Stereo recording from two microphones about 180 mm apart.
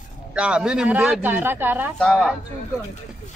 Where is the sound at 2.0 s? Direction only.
5° left (ahead or behind).